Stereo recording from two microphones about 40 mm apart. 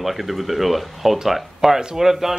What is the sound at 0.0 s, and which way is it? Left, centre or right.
Speech, centre.